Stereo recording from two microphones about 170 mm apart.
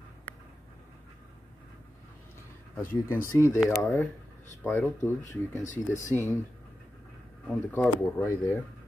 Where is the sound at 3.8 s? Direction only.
5° left (ahead or behind).